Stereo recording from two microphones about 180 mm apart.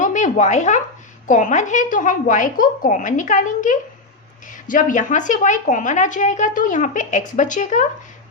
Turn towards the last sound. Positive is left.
turn(degrees=45)  # may be behind; listen again after turning